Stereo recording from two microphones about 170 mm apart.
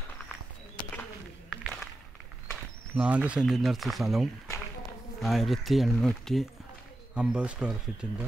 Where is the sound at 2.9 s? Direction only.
5° right (ahead or behind).